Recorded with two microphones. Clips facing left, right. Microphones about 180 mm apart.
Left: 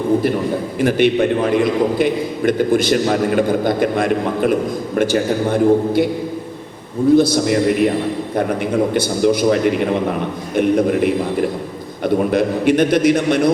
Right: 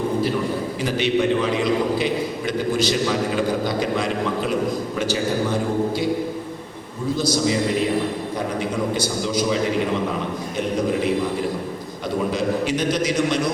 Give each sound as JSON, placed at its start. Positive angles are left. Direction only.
{"t": 0.8, "sound": "a man's voice", "side_deg": 55}
{"t": 7.2, "sound": "a man's voice", "side_deg": 60}
{"t": 8.9, "sound": "a man's voice", "side_deg": 60}